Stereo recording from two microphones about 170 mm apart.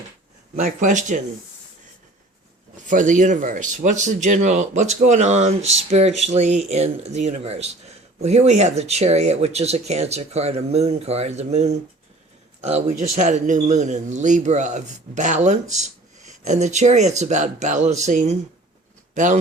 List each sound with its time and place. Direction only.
0.6 s a man's voice: 50° right (ahead or behind)
2.8 s a man's voice: 50° right (ahead or behind)